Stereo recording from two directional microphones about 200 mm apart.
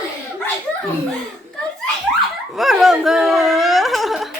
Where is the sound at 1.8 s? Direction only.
Centre (ahead or behind).